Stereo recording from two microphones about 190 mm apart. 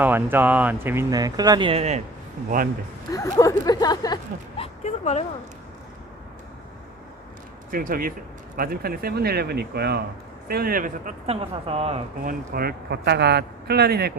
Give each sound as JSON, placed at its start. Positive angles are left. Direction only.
{"t": 0.0, "sound": "speech", "side_deg": -10}
{"t": 3.1, "sound": "speech", "side_deg": 15}
{"t": 7.7, "sound": "speech", "side_deg": -50}
{"t": 11.3, "sound": "speech", "side_deg": -30}